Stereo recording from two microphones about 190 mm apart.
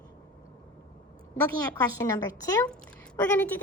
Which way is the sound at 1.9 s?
15° left (ahead or behind).